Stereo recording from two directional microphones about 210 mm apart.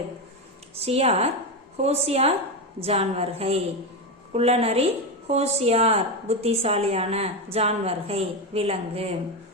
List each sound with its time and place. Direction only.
0.9 s a woman's voice: 30° right (ahead or behind)